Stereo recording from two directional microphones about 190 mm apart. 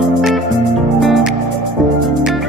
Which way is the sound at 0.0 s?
Centre (ahead or behind).